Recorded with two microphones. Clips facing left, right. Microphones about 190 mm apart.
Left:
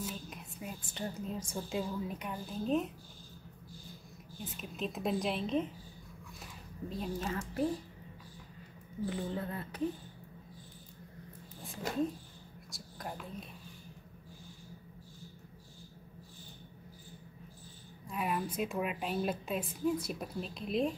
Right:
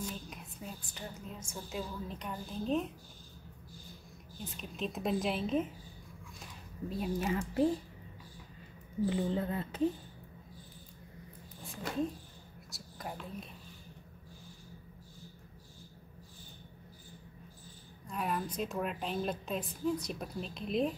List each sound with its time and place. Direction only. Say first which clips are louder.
0.0 s a sound: even; centre (ahead or behind)
0.9 s a woman's voice: left 6 dB; 30° left (ahead or behind)
1.8 s a woman's voice: left 3 dB; 10° left (ahead or behind)
4.5 s a woman's voice: even; centre (ahead or behind)
6.4 s a sound: right 2 dB; 5° right (ahead or behind)
9.1 s speech: right 3 dB; 25° right (ahead or behind)
11.6 s a woman's voice: left 1 dB; centre (ahead or behind)
18.0 s a woman's voice: left 1 dB; 5° left (ahead or behind)